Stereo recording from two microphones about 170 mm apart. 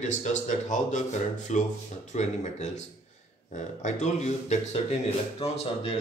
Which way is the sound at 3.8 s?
45° left (ahead or behind).